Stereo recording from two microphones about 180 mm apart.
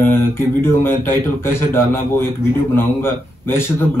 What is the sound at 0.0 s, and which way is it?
A man's voice, 10° left (ahead or behind).